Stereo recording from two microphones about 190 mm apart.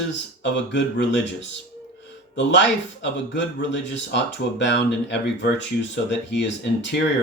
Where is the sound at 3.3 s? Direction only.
65° left (ahead or behind).